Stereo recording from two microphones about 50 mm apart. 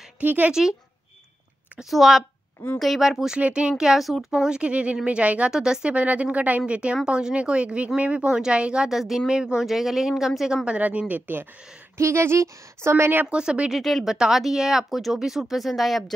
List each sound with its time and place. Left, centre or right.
0.2 s speech: right
0.5 s speech: centre
1.8 s speech: centre
3.3 s speech: right
4.0 s speech: centre
4.5 s speech: right
5.5 s speech: centre
5.9 s speech: right
8.8 s speech: centre
10.6 s speech: right
12.0 s speech: right
13.3 s speech: centre
13.7 s speech: centre
14.0 s speech: centre